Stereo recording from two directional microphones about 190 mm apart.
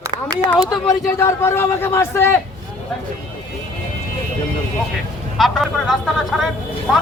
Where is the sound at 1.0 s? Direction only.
15° left (ahead or behind).